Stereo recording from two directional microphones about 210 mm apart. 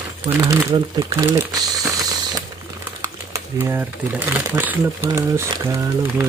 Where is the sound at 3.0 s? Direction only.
15° right (ahead or behind).